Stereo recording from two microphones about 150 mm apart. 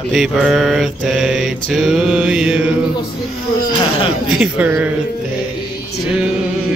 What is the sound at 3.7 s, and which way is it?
Speech, 35° left (ahead or behind).